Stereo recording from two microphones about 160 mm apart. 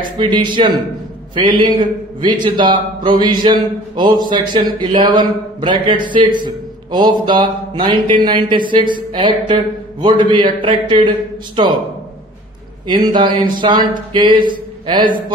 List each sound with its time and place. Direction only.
0.2 s a man's voice: 30° right (ahead or behind)
12.8 s a man's voice: 30° right (ahead or behind)